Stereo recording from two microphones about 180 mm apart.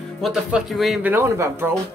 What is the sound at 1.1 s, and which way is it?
Speech, 10° right (ahead or behind).